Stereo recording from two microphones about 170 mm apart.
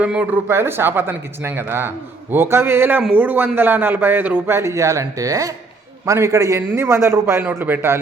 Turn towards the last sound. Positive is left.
turn(degrees=-15)  # may be behind; listen again after turning